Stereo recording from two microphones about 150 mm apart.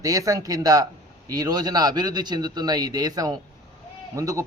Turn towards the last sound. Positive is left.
turn(degrees=-20)  # may be behind; listen again after turning